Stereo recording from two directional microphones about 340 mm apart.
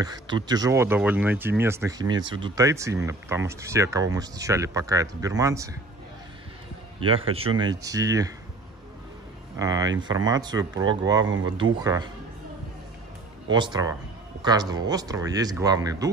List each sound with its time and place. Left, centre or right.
0.0 s speech: centre
7.0 s a man's voice: centre
9.6 s speech: centre
10.7 s speech: right
11.8 s speech: centre
13.5 s speech: centre